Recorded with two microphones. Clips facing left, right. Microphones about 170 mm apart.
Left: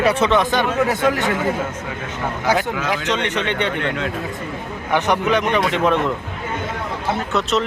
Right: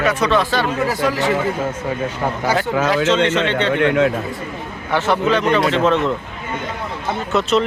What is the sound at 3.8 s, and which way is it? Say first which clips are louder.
Speech: right 9 dB; 60° right (ahead or behind).